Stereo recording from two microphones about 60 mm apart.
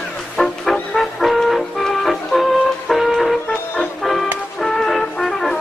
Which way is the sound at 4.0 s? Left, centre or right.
Centre.